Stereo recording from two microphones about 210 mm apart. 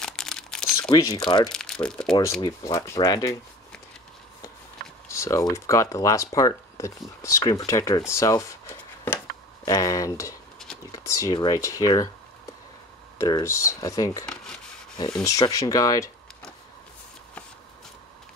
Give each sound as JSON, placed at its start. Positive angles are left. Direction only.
{"t": 0.0, "sound": "crumpling", "side_deg": 5}
{"t": 0.8, "sound": "speech", "side_deg": 15}
{"t": 1.5, "sound": "speech", "side_deg": 5}
{"t": 2.4, "sound": "speech", "side_deg": 15}
{"t": 5.0, "sound": "typing", "side_deg": 15}
{"t": 5.5, "sound": "speech", "side_deg": 15}
{"t": 8.1, "sound": "a sound", "side_deg": 15}
{"t": 9.7, "sound": "speech", "side_deg": 15}
{"t": 13.2, "sound": "speech", "side_deg": 15}
{"t": 14.3, "sound": "rub", "side_deg": 5}
{"t": 15.2, "sound": "speech", "side_deg": 15}